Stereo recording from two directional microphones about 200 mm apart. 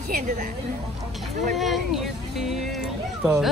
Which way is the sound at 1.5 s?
Centre (ahead or behind).